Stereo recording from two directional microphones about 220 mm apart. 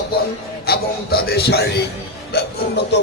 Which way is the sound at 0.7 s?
45° left (ahead or behind).